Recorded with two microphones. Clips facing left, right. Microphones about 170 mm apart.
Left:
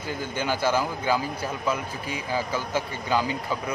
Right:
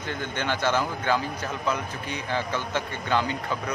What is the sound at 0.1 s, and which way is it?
Speech, 10° left (ahead or behind).